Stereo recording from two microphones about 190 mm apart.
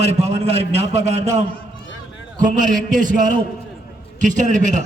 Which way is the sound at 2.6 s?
45° right (ahead or behind).